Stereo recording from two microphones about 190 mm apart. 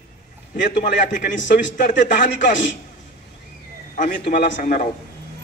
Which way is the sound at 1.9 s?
70° left (ahead or behind).